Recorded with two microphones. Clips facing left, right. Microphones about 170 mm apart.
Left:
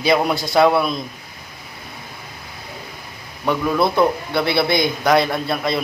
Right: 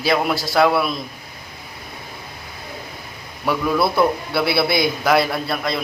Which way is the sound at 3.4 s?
5° right (ahead or behind).